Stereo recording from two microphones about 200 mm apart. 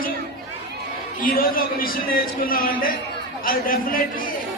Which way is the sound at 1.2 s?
45° left (ahead or behind).